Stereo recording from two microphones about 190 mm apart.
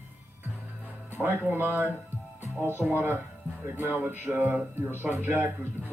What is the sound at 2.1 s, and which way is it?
Music, 10° right (ahead or behind).